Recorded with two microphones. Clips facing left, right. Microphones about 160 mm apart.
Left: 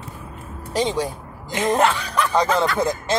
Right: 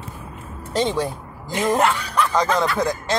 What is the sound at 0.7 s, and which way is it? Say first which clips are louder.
Speech: right 1 dB; 15° left (ahead or behind).